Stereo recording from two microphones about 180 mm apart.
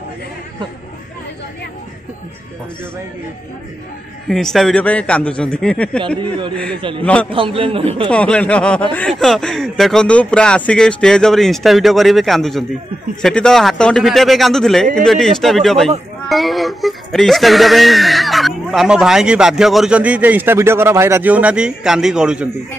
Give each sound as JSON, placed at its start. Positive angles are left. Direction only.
{"t": 4.3, "sound": "speech", "side_deg": 0}
{"t": 6.8, "sound": "a man's voice", "side_deg": -30}
{"t": 8.1, "sound": "speech", "side_deg": 5}